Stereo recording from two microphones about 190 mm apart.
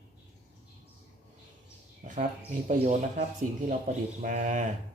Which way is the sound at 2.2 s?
40° right (ahead or behind).